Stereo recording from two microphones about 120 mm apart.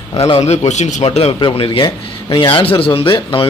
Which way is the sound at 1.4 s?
45° left (ahead or behind).